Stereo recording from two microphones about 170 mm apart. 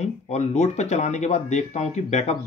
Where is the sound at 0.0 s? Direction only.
40° left (ahead or behind).